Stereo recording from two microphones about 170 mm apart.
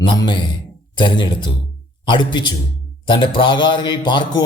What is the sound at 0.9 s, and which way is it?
Mantra, 30° left (ahead or behind).